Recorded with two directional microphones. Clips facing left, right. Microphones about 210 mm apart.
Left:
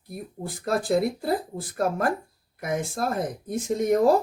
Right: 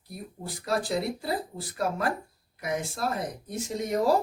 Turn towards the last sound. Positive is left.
turn(degrees=50)  # may be behind; listen again after turning